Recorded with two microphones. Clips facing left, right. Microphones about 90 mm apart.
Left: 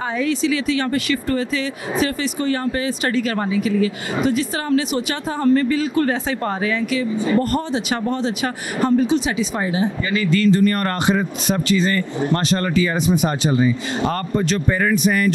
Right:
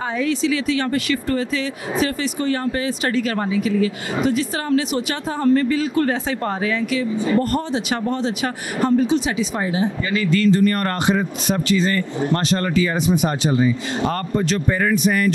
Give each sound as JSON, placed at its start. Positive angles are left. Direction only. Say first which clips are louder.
{"t": 0.2, "sound": "a man's voice", "louder": "even", "side_deg": 15}
{"t": 3.3, "sound": "a man's voice", "louder": "even", "side_deg": 15}